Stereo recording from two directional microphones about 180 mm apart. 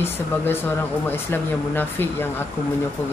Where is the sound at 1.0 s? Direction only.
10° left (ahead or behind).